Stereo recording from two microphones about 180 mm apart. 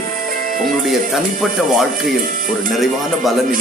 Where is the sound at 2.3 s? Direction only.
50° right (ahead or behind).